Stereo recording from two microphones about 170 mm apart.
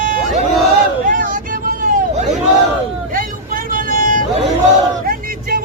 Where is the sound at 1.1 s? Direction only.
50° right (ahead or behind).